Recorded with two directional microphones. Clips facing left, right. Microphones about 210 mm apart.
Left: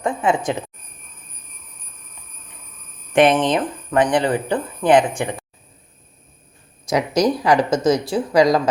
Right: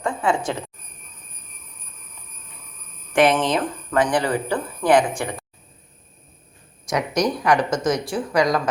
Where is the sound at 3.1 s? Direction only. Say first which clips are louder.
Left 3 dB; 20° left (ahead or behind).